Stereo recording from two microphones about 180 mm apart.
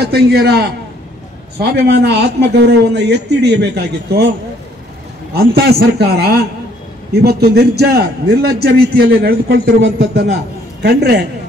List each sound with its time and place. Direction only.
0.0 s a man's voice: 60° right (ahead or behind)
5.3 s a man's voice: 60° right (ahead or behind); by 10.2 s 85° right
10.8 s a man's voice: 65° right (ahead or behind)